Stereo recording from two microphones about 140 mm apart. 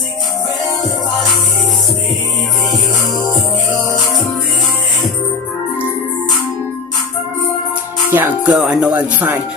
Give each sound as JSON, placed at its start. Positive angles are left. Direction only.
{"t": 8.1, "sound": "speech", "side_deg": -15}
{"t": 8.5, "sound": "speech", "side_deg": -5}